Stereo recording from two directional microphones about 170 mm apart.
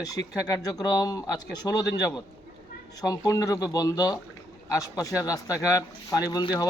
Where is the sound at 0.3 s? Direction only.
20° left (ahead or behind).